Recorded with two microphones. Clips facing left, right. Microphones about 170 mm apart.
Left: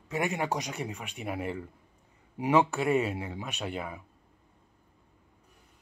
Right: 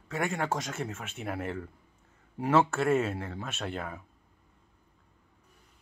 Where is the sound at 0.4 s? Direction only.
Centre (ahead or behind).